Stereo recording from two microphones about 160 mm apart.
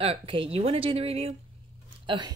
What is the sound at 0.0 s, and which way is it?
Speech, 35° right (ahead or behind).